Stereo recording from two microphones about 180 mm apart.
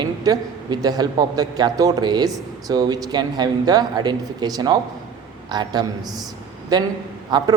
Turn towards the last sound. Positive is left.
turn(degrees=-25)  # may be behind; listen again after turning